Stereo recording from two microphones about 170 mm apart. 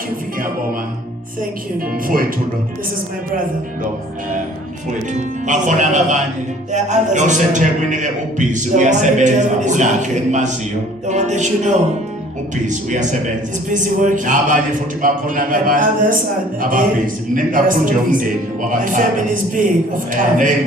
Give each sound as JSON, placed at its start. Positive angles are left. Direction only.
{"t": 2.0, "sound": "speech", "side_deg": -55}
{"t": 5.1, "sound": "a man's voice", "side_deg": -45}